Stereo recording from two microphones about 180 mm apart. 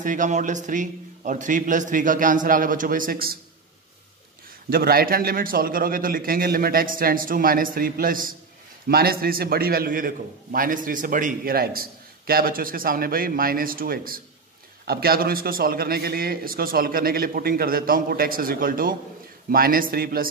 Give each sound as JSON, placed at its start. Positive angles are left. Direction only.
{"t": 0.0, "sound": "a man's voice", "side_deg": -45}
{"t": 4.6, "sound": "a man's voice", "side_deg": -55}